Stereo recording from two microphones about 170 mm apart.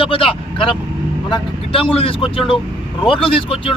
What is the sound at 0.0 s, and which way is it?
A man's voice, 30° left (ahead or behind).